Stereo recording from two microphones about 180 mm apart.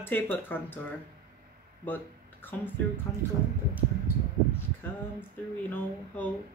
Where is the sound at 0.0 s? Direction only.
10° left (ahead or behind).